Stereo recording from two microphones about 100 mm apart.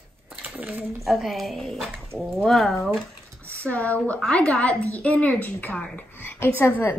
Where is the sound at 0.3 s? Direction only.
15° right (ahead or behind).